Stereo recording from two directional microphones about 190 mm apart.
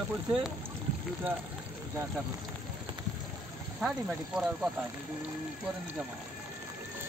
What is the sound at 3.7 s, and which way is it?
Speech, 5° right (ahead or behind).